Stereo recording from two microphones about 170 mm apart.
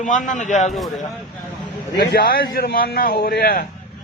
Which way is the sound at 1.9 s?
60° left (ahead or behind).